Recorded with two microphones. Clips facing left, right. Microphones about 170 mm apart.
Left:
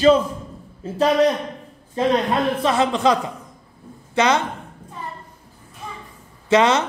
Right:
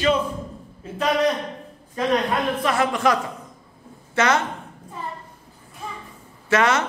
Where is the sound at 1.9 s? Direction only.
25° left (ahead or behind).